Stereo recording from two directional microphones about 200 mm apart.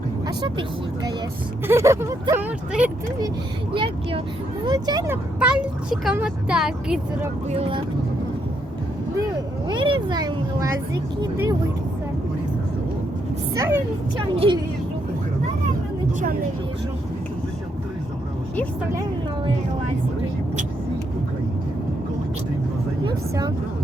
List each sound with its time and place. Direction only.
1.6 s speech: 15° right (ahead or behind)
4.6 s speech: 20° right (ahead or behind); by 7.3 s 5° right (ahead or behind)
7.4 s speech: 30° right (ahead or behind)
9.6 s speech: 25° right (ahead or behind)
13.5 s speech: 15° right (ahead or behind)
14.3 s speech: 25° right (ahead or behind)
23.0 s speech: 20° right (ahead or behind)